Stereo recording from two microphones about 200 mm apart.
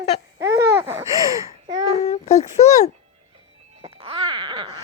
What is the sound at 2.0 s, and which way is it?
Speech, 35° left (ahead or behind).